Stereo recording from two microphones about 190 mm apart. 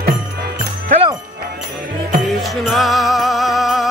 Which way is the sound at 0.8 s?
35° right (ahead or behind).